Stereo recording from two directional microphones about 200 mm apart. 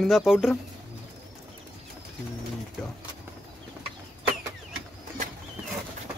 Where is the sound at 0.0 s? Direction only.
Centre (ahead or behind).